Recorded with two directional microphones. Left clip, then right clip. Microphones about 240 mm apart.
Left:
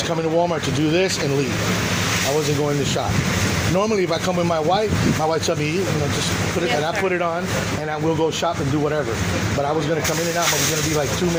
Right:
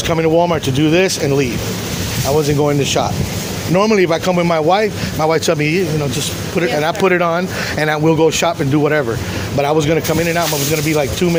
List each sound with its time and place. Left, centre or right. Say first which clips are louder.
0.1 s speech: right 8 dB; right
6.8 s speech: right 7 dB; right